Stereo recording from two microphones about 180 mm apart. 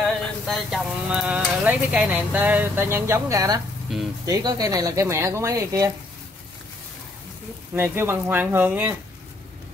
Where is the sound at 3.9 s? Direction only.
5° right (ahead or behind).